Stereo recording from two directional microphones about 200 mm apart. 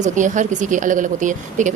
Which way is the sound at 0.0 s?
40° right (ahead or behind).